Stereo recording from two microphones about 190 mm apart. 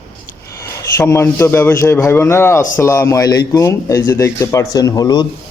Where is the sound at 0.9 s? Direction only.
15° left (ahead or behind).